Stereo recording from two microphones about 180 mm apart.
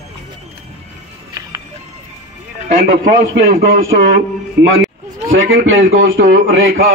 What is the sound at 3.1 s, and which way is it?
A man's voice, 60° right (ahead or behind).